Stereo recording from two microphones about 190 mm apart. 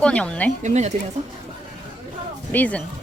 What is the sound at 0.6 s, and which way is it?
Speech, 35° right (ahead or behind).